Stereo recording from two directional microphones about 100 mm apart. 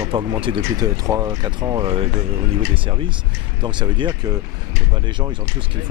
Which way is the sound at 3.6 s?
45° right (ahead or behind).